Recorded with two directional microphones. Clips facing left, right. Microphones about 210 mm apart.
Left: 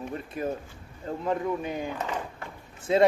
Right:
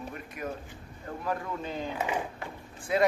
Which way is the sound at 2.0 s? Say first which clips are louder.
Right 1 dB; 10° right (ahead or behind).